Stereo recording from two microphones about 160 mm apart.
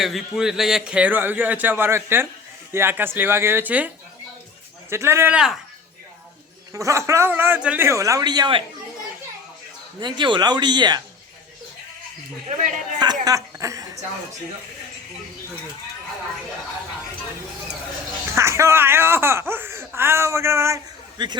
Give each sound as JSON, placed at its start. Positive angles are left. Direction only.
{"t": 0.0, "sound": "a man's voice", "side_deg": 0}
{"t": 6.7, "sound": "a man's voice", "side_deg": -20}
{"t": 10.0, "sound": "a man's voice", "side_deg": -30}
{"t": 12.5, "sound": "speech", "side_deg": -50}
{"t": 13.2, "sound": "a woman's voice", "side_deg": -20}
{"t": 18.3, "sound": "speech", "side_deg": -15}